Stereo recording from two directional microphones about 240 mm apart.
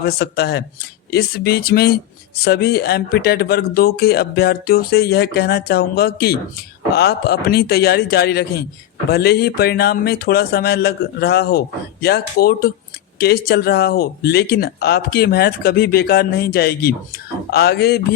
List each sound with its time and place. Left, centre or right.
0.0 s speech: left